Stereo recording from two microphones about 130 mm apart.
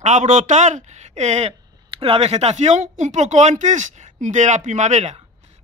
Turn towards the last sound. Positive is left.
turn(degrees=-60)  # may be behind; listen again after turning